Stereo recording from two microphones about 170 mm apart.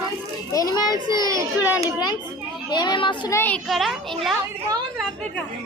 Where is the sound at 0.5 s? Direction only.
25° left (ahead or behind).